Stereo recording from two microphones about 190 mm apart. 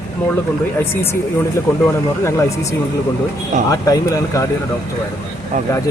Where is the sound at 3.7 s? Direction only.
20° left (ahead or behind).